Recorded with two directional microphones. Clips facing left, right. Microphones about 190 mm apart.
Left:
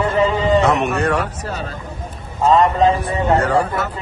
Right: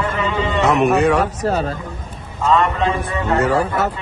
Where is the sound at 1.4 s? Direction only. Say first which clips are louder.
Right 8 dB; 40° right (ahead or behind).